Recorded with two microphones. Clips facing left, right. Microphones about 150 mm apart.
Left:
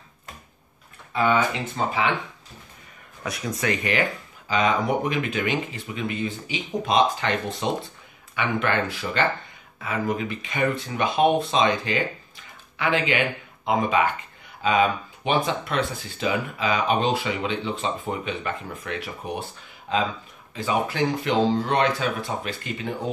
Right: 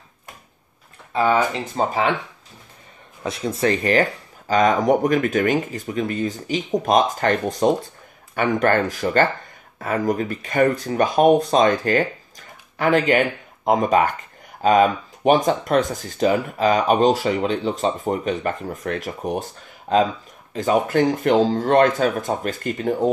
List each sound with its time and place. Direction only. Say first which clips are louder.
1.1 s speech: right 3 dB; 35° right (ahead or behind)
3.3 s speech: right 6 dB; 25° right (ahead or behind); by 22.9 s 45° right (ahead or behind)